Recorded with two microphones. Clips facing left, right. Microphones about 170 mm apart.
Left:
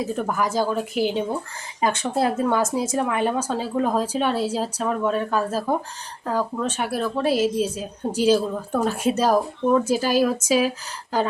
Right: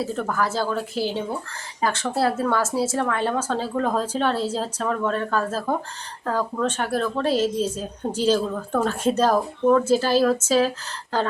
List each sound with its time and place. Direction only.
0.0 s a woman's voice: 15° left (ahead or behind)